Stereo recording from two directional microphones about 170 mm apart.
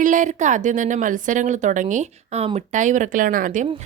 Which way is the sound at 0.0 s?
50° right (ahead or behind).